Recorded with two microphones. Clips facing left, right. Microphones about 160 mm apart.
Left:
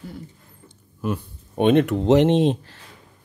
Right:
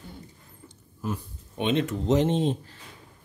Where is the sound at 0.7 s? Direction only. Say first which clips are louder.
Left 6 dB; 70° left (ahead or behind).